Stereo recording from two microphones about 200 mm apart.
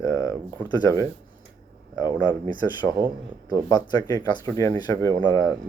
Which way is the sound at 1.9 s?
15° left (ahead or behind).